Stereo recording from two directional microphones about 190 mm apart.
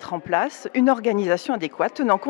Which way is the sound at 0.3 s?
15° left (ahead or behind).